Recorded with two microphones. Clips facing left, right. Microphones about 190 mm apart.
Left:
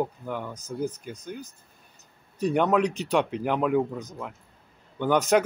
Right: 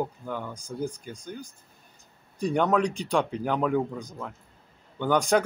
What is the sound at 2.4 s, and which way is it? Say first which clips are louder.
Speech: left 1 dB; 5° left (ahead or behind).